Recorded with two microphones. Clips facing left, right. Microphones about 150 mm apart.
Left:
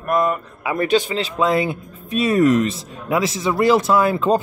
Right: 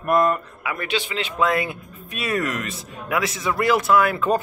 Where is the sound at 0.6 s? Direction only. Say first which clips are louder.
Left 8 dB; 35° left (ahead or behind).